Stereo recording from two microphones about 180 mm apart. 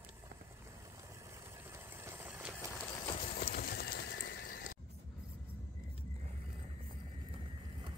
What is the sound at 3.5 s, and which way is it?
Neigh, 60° left (ahead or behind).